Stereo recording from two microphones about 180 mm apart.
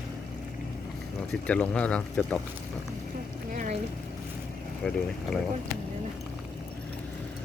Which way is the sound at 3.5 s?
45° right (ahead or behind).